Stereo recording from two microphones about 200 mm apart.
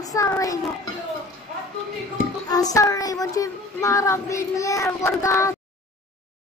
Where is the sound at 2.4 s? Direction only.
20° left (ahead or behind).